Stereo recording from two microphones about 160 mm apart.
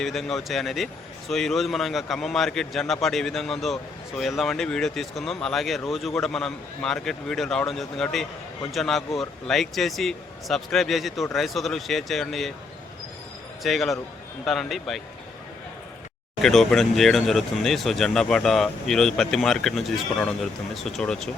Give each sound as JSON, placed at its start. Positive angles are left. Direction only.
{"t": 0.0, "sound": "speech", "side_deg": 0}
{"t": 13.6, "sound": "speech", "side_deg": 0}
{"t": 16.4, "sound": "speech", "side_deg": 0}